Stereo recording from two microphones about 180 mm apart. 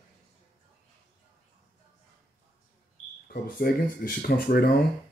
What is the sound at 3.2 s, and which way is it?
Speech, 55° left (ahead or behind).